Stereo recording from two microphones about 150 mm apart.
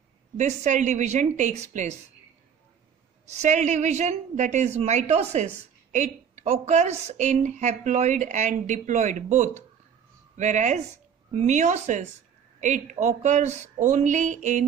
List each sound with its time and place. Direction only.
0.4 s a woman's voice: 55° right (ahead or behind)
3.3 s a woman's voice: 50° right (ahead or behind)